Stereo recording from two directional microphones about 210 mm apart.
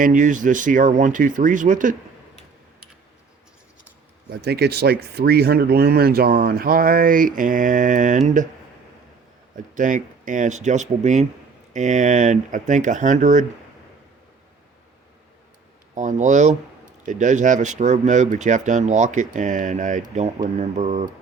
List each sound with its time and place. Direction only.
0.0 s speech: 40° right (ahead or behind)
4.3 s speech: 50° right (ahead or behind)
9.6 s speech: 35° right (ahead or behind)
16.0 s speech: 35° right (ahead or behind)